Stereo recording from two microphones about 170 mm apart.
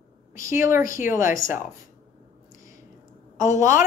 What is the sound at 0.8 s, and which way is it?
Speech, 50° left (ahead or behind).